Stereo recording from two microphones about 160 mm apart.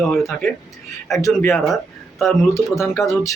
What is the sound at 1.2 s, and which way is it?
Speech, 15° left (ahead or behind).